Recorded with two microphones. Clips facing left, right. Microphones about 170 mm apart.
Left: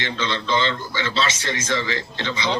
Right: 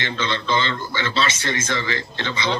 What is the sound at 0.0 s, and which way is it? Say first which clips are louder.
A man's voice: even; 55° right (ahead or behind).